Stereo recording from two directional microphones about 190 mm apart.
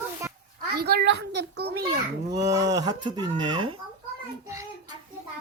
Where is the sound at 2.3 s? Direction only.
20° right (ahead or behind).